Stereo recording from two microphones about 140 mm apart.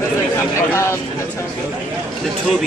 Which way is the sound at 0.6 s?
20° left (ahead or behind).